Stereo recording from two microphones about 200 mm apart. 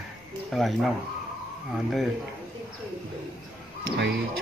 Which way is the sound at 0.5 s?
Centre (ahead or behind).